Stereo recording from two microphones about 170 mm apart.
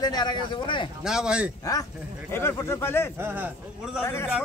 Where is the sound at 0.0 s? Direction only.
25° left (ahead or behind).